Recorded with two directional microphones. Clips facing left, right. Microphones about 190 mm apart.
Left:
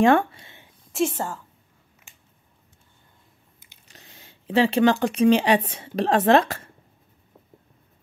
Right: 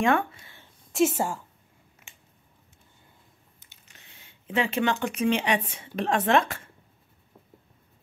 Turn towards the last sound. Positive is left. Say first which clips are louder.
# left 5 dB
turn(degrees=35)  # may be behind; listen again after turning